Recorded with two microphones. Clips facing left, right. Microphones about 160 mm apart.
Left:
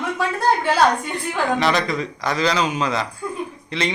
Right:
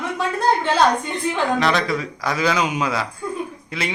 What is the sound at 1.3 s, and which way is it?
Speech, centre (ahead or behind).